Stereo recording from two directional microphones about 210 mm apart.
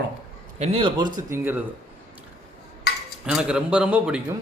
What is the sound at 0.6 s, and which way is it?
Speech, 25° right (ahead or behind).